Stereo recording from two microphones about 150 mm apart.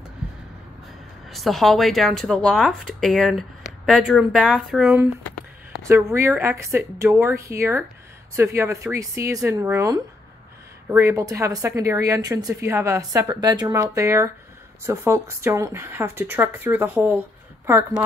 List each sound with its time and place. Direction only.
1.3 s a woman's voice: centre (ahead or behind); by 18.0 s 15° right (ahead or behind)